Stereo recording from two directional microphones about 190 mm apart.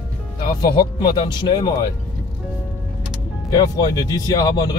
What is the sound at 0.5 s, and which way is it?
Speech, 25° left (ahead or behind).